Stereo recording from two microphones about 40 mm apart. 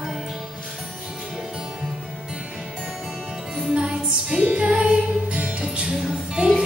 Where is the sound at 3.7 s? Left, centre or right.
Centre.